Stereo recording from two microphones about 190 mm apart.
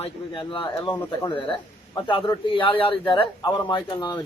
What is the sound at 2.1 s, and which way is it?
Speech, 25° left (ahead or behind).